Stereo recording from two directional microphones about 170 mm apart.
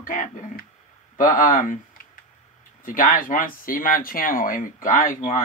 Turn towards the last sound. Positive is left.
turn(degrees=50)  # may be behind; listen again after turning